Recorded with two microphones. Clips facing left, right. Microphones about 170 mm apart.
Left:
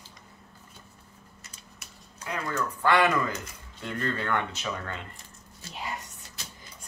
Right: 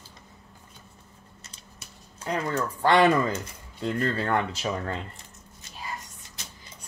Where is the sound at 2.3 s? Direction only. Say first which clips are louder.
Right 4 dB; 30° right (ahead or behind).